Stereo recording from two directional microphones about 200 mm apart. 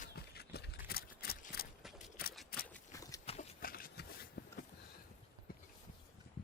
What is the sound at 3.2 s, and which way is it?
Horse, 30° left (ahead or behind).